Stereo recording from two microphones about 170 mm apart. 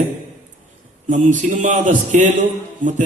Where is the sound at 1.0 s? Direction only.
50° right (ahead or behind).